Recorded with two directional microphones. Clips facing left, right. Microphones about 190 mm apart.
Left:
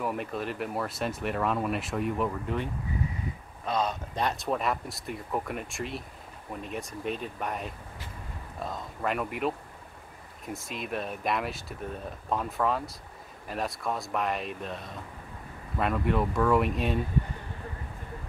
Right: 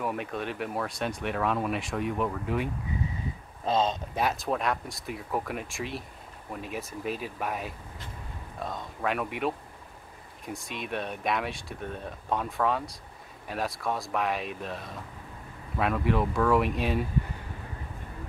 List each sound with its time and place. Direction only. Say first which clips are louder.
0.0 s speech: even; centre (ahead or behind)
3.6 s speech: right 3 dB; 25° right (ahead or behind)
4.1 s speech: right 1 dB; 5° right (ahead or behind)